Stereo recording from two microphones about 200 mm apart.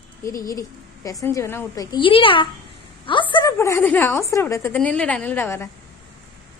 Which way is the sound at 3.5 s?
10° left (ahead or behind).